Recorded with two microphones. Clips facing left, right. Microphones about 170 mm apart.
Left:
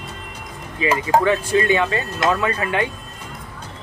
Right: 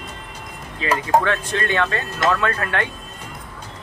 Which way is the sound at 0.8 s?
10° left (ahead or behind).